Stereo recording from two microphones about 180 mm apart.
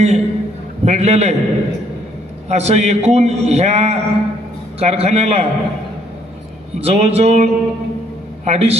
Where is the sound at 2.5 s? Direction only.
35° right (ahead or behind).